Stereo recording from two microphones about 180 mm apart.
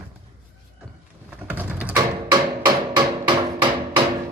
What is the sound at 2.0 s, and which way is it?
Hammer, 25° right (ahead or behind).